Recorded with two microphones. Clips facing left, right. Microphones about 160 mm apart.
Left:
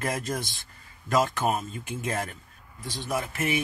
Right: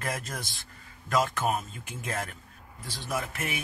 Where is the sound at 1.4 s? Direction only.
Centre (ahead or behind).